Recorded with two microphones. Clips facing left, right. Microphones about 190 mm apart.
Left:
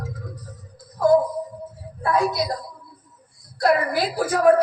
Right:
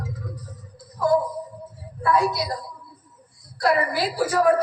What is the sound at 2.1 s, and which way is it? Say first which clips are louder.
Speech: left 1 dB; 20° left (ahead or behind).